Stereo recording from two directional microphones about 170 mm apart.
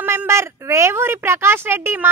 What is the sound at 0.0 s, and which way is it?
A woman's voice, 15° right (ahead or behind).